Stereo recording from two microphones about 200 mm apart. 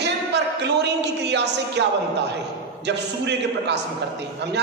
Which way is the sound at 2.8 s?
60° right (ahead or behind).